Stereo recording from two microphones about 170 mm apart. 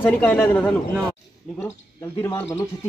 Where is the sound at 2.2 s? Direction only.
15° left (ahead or behind).